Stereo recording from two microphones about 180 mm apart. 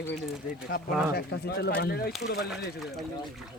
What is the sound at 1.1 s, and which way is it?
Speech, 65° left (ahead or behind).